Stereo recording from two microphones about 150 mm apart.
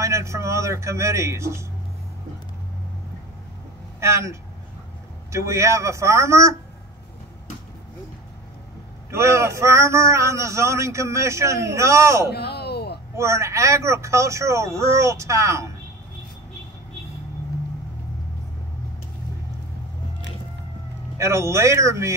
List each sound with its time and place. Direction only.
0.0 s a man's voice: 20° right (ahead or behind)
4.0 s a man's voice: 20° right (ahead or behind)
9.1 s a man's voice: 20° right (ahead or behind)
12.3 s a sound: 90° left
13.1 s a man's voice: 20° right (ahead or behind)
21.2 s a man's voice: 20° right (ahead or behind)